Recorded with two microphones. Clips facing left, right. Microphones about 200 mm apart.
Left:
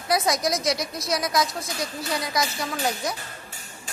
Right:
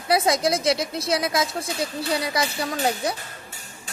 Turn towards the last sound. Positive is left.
turn(degrees=-30)  # may be behind; listen again after turning